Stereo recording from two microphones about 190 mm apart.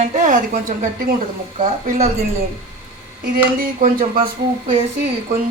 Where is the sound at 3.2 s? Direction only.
50° right (ahead or behind).